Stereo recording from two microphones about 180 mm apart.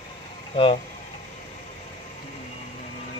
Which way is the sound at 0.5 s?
30° left (ahead or behind).